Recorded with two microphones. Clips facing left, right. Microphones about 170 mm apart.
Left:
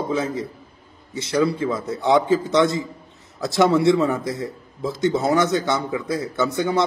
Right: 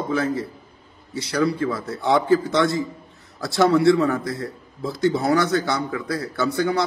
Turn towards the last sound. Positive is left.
turn(degrees=20)  # may be behind; listen again after turning